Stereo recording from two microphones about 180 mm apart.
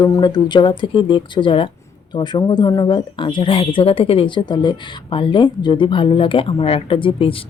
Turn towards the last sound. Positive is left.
turn(degrees=30)  # may be behind; listen again after turning